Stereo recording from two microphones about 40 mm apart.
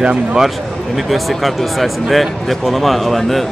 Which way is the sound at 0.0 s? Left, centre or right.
Right.